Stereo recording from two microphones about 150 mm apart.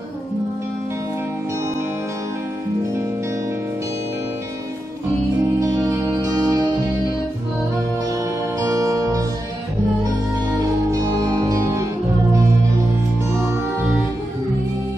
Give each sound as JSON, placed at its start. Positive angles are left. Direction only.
{"t": 5.6, "sound": "music", "side_deg": -20}
{"t": 8.5, "sound": "music", "side_deg": -20}
{"t": 10.9, "sound": "music", "side_deg": -25}